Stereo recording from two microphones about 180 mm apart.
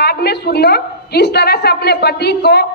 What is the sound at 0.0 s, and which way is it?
A woman's voice, 65° left (ahead or behind).